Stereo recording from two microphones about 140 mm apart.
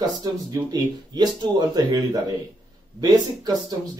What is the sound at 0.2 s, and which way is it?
Speech, 25° right (ahead or behind).